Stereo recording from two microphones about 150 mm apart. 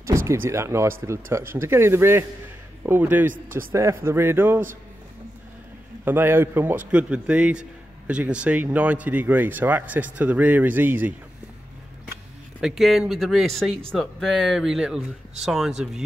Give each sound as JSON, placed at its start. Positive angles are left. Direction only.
{"t": 0.0, "sound": "speech", "side_deg": -20}
{"t": 6.0, "sound": "speech", "side_deg": -15}
{"t": 12.5, "sound": "speech", "side_deg": -5}